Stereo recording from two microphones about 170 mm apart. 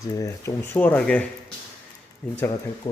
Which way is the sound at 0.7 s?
10° left (ahead or behind).